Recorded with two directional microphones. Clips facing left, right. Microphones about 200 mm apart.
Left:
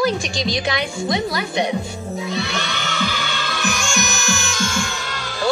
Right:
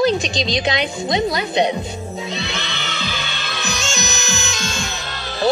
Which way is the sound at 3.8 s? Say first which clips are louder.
Left 1 dB; 20° right (ahead or behind).